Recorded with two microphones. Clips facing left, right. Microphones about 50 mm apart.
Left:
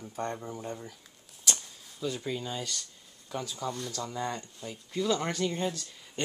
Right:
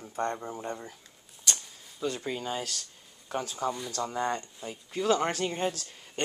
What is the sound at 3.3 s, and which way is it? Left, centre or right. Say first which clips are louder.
Speech: right 3 dB; right.